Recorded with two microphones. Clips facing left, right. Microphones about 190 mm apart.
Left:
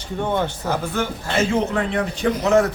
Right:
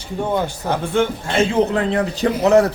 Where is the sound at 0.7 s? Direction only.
30° right (ahead or behind).